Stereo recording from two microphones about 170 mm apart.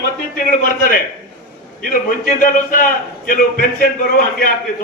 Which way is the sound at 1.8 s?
55° left (ahead or behind).